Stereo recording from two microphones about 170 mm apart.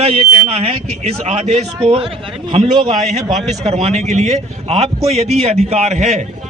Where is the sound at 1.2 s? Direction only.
35° right (ahead or behind).